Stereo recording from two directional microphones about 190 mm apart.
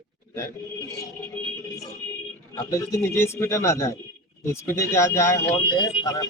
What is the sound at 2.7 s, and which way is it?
A man's voice, 15° left (ahead or behind).